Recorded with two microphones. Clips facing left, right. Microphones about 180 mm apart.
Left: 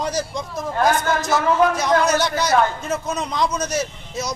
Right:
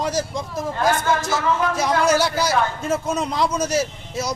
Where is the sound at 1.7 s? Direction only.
5° right (ahead or behind).